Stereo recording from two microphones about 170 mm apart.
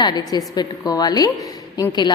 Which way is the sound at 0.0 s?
25° left (ahead or behind).